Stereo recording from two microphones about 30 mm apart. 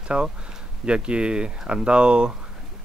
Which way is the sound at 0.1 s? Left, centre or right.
Right.